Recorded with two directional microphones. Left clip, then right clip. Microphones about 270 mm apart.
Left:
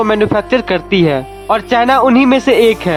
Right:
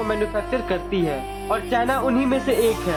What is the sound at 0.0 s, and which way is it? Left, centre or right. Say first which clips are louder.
Speech: left 11 dB; left.